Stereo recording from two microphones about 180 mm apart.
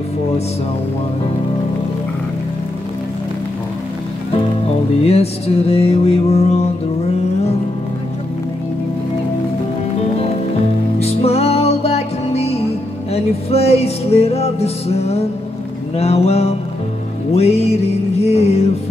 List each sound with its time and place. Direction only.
5.0 s music: 35° left (ahead or behind)
11.0 s music: 35° left (ahead or behind)